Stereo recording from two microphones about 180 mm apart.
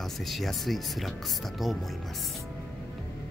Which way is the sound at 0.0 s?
Centre (ahead or behind).